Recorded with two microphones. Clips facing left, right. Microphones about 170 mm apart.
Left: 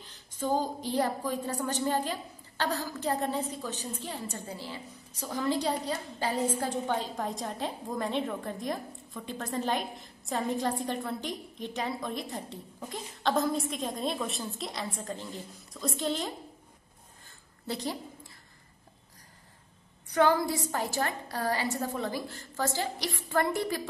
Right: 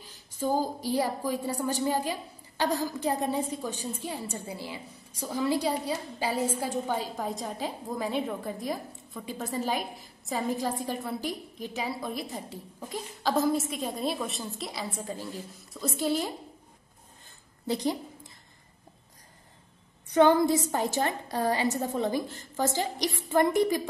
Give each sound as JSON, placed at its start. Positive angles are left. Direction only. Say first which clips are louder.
{"t": 0.0, "sound": "a woman's voice", "louder": "right 3 dB", "side_deg": -10}
{"t": 17.6, "sound": "a woman's voice", "louder": "right 5 dB", "side_deg": -15}
{"t": 20.1, "sound": "a woman's voice", "louder": "right 4 dB", "side_deg": -20}